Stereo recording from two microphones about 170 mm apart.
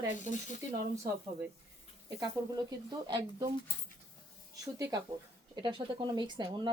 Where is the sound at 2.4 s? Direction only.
15° right (ahead or behind).